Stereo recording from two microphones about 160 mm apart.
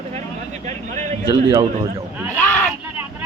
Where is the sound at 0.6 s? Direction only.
50° right (ahead or behind).